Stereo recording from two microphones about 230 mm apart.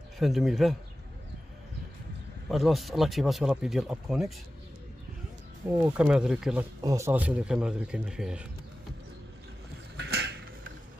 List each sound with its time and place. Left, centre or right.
0.2 s speech: centre
2.5 s speech: centre
5.7 s speech: centre
6.8 s speech: centre
9.9 s a sound: right